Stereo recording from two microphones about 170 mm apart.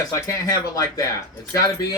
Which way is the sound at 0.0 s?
20° left (ahead or behind).